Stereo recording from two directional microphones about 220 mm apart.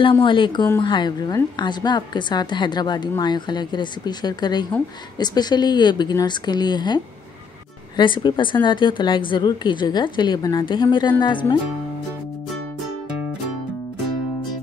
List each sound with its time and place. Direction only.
0.0 s a woman's voice: 20° left (ahead or behind)